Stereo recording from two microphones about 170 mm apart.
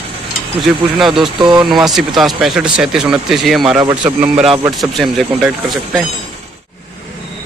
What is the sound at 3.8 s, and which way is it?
Speech, 30° right (ahead or behind).